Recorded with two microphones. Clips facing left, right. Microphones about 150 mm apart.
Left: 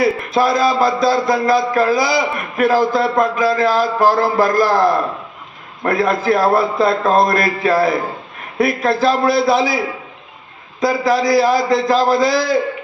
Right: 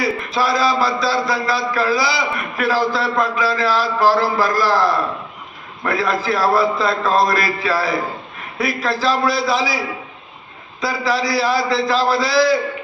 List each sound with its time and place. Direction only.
0.0 s a man's voice: 50° left (ahead or behind)